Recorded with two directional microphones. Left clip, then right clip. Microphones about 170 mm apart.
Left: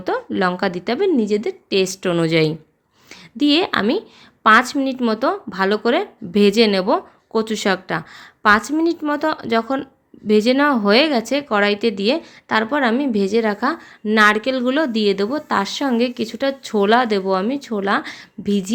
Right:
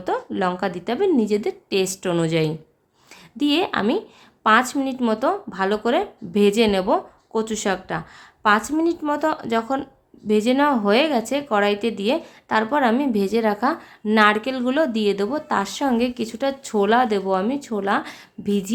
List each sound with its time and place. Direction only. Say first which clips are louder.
0.0 s speech: left 3 dB; 20° left (ahead or behind)